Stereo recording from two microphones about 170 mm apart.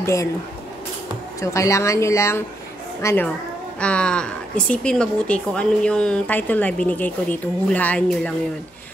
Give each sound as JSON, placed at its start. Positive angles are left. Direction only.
{"t": 0.0, "sound": "speech", "side_deg": 15}
{"t": 1.4, "sound": "a woman's voice", "side_deg": 15}